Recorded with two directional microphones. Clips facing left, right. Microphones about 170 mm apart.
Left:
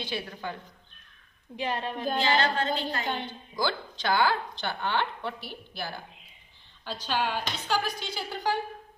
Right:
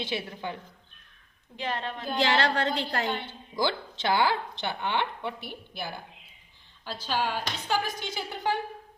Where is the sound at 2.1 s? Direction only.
80° right.